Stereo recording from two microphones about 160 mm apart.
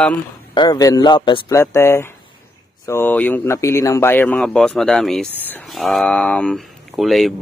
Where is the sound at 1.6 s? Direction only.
15° left (ahead or behind).